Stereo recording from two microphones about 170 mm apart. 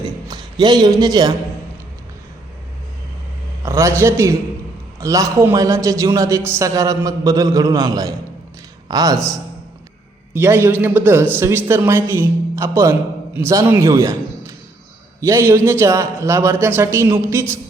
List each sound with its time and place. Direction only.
0.0 s a sound: 25° right (ahead or behind)
3.6 s a man's voice: 15° right (ahead or behind)
10.3 s a man's voice: 15° right (ahead or behind)